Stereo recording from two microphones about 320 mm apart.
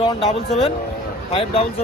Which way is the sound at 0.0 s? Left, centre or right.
Centre.